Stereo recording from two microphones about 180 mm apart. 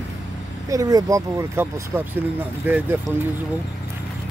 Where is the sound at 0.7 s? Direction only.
20° right (ahead or behind).